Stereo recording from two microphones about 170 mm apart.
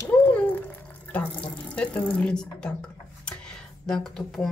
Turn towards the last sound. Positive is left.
turn(degrees=0)  # may be behind; listen again after turning